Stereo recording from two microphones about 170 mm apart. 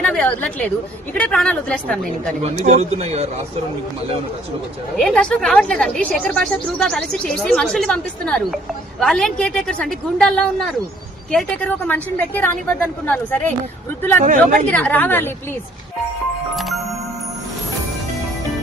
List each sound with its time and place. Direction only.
0.0 s a woman's voice: 5° left (ahead or behind)
2.4 s speech: 40° right (ahead or behind)
4.9 s a woman's voice: 5° left (ahead or behind)
14.2 s speech: 50° right (ahead or behind)
14.7 s a woman's voice: 10° left (ahead or behind)
16.6 s music: centre (ahead or behind)